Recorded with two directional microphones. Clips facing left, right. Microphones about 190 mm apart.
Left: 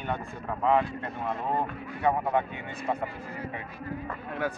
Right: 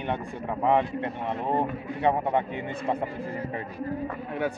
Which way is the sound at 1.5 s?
25° right (ahead or behind).